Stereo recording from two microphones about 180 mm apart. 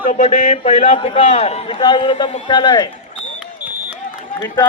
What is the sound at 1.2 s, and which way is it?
A man's voice, 40° left (ahead or behind).